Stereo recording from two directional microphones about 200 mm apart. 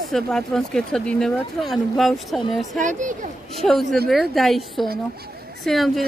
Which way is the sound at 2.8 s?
40° right (ahead or behind).